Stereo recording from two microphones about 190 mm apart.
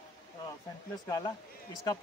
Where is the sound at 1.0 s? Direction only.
20° left (ahead or behind).